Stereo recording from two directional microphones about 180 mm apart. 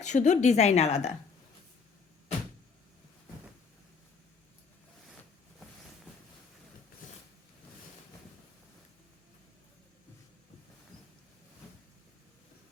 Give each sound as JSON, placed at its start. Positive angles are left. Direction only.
{"t": 0.0, "sound": "a woman's voice", "side_deg": 40}